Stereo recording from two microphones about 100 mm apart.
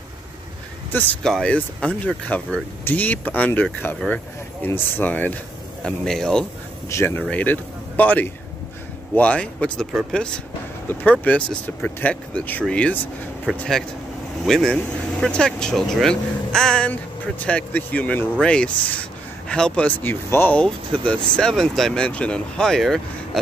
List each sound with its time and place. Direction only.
1.2 s speech: 10° left (ahead or behind)
5.9 s speech: 5° left (ahead or behind)
6.9 s speech: 25° left (ahead or behind)
13.5 s speech: 10° right (ahead or behind)
14.4 s speech: 5° left (ahead or behind); by 20.5 s 20° left (ahead or behind)
20.5 s speech: 10° left (ahead or behind)